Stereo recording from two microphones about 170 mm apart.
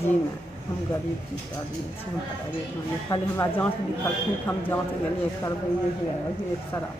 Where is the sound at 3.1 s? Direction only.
20° left (ahead or behind).